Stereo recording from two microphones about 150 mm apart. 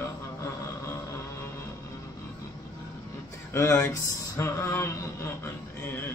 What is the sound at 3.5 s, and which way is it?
Speech, 15° left (ahead or behind).